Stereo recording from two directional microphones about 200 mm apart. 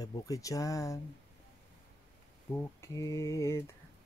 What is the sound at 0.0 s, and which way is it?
Speech, 20° left (ahead or behind).